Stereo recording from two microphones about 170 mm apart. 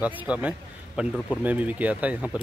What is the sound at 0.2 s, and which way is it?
Speech, 10° right (ahead or behind).